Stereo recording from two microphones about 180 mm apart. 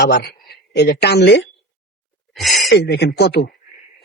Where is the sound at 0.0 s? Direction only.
65° left (ahead or behind).